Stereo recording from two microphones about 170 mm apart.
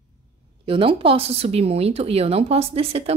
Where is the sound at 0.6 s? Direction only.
30° right (ahead or behind).